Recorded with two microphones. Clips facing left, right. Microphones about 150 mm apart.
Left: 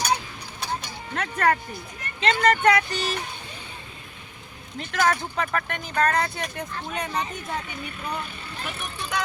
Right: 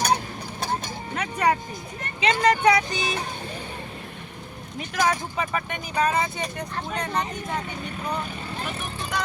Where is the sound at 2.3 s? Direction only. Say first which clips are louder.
Even; 10° right (ahead or behind).